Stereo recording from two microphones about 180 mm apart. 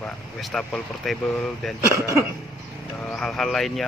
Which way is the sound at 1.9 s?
15° right (ahead or behind).